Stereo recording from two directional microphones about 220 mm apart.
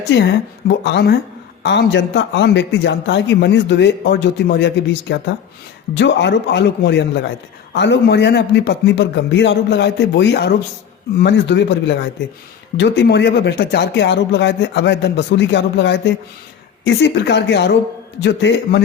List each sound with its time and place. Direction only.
0.1 s a man's voice: 50° left (ahead or behind)